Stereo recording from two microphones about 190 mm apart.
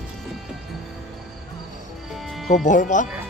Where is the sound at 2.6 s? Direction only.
40° left (ahead or behind).